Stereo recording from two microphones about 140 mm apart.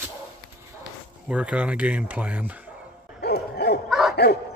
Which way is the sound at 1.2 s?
10° right (ahead or behind).